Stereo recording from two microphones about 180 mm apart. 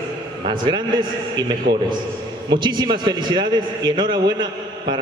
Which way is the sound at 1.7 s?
60° right (ahead or behind).